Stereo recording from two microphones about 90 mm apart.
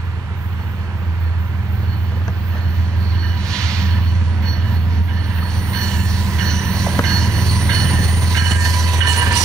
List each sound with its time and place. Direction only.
3.4 s a sound: 10° left (ahead or behind)
5.7 s train: 5° left (ahead or behind)
8.3 s train: 40° right (ahead or behind)